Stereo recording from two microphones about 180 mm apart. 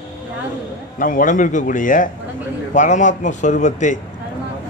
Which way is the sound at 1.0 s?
50° left (ahead or behind).